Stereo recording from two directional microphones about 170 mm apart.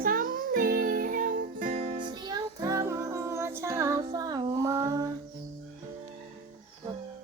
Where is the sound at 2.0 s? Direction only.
25° right (ahead or behind).